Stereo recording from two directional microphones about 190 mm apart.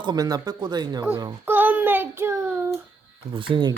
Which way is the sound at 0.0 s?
20° right (ahead or behind).